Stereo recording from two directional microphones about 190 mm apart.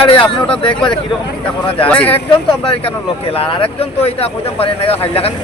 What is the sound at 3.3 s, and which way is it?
Speech, 30° left (ahead or behind).